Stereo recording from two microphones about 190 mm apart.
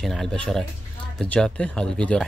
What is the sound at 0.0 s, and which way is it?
Speech, centre (ahead or behind).